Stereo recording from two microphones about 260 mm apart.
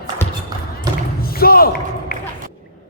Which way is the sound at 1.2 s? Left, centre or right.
Left.